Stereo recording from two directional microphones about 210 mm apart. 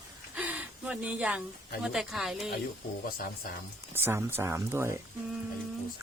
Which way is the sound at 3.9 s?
10° right (ahead or behind).